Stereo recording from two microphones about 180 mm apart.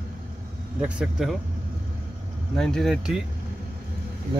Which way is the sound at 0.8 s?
5° right (ahead or behind).